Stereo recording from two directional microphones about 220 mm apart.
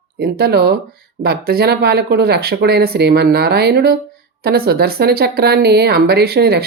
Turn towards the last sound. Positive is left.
turn(degrees=-45)  # may be behind; listen again after turning